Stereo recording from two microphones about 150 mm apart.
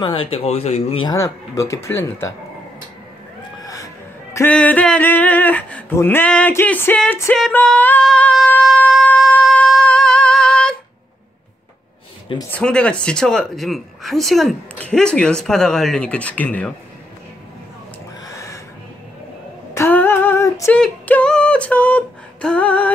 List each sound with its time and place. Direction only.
0.0 s speech: 35° left (ahead or behind)
1.0 s speech: 20° left (ahead or behind)
3.6 s music: 20° left (ahead or behind)
4.5 s male singing: 10° left (ahead or behind)
7.5 s a sound: 10° left (ahead or behind)
12.4 s speech: 10° left (ahead or behind)
18.2 s a sound: 20° left (ahead or behind)
19.7 s female singing: 15° left (ahead or behind)
20.7 s female singing: 10° left (ahead or behind)